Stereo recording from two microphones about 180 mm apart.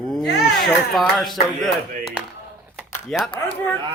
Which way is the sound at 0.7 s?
Centre (ahead or behind).